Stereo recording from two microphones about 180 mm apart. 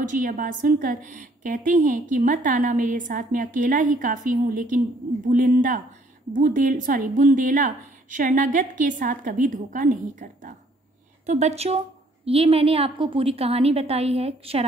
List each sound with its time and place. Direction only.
0.0 s a woman's voice: 50° right (ahead or behind)